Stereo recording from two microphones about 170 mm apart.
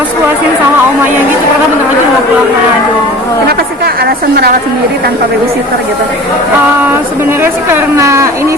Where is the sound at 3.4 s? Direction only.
65° right (ahead or behind).